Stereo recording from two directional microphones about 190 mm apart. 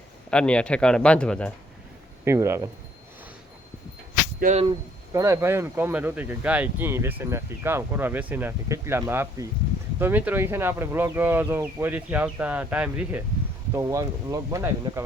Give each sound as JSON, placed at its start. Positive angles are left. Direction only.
{"t": 0.3, "sound": "speech", "side_deg": 5}
{"t": 2.2, "sound": "speech", "side_deg": -15}
{"t": 4.4, "sound": "speech", "side_deg": -40}
{"t": 5.1, "sound": "speech", "side_deg": -15}